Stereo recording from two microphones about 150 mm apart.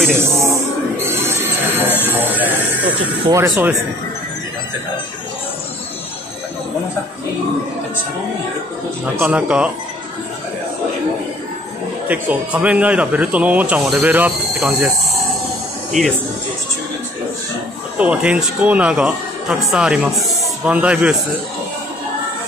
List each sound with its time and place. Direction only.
0.1 s music: 20° right (ahead or behind)
2.1 s a sound: 10° right (ahead or behind)
3.3 s speech: 20° right (ahead or behind)
9.0 s speech: 10° right (ahead or behind)
12.1 s speech: 10° right (ahead or behind)
16.0 s speech: centre (ahead or behind)
17.9 s speech: 10° right (ahead or behind)